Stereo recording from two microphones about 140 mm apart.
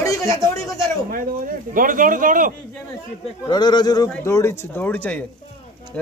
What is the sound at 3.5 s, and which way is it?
Speech, 30° left (ahead or behind).